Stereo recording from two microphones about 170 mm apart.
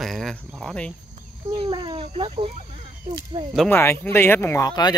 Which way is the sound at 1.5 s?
30° right (ahead or behind).